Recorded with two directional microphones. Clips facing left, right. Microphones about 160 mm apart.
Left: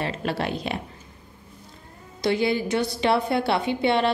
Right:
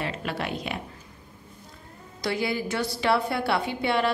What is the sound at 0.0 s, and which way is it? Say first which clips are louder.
Speech: left 4 dB; 35° left (ahead or behind).